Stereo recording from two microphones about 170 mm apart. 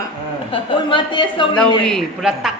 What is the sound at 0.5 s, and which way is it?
Speech, 30° left (ahead or behind).